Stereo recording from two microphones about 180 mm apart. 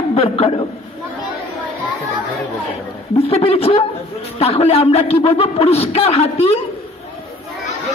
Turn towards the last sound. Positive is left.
turn(degrees=35)  # may be behind; listen again after turning